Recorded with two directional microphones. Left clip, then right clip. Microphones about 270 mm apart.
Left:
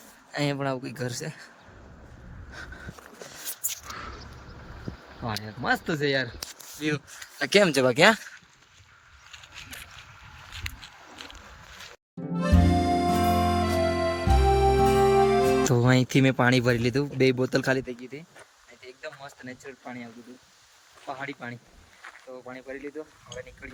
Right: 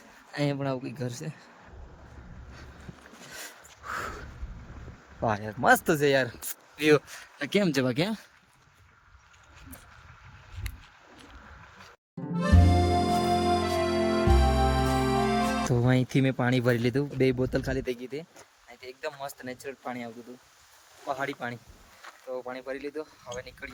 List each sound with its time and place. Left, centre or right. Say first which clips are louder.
0.3 s speech: left 2 dB; centre
3.9 s a sound: right 5 dB; centre
5.2 s speech: right 6 dB; centre
6.7 s speech: right 8 dB; right
7.3 s speech: left 6 dB; centre
12.4 s music: left 1 dB; centre
18.2 s speech: right 5 dB; centre
21.1 s speech: right 4 dB; centre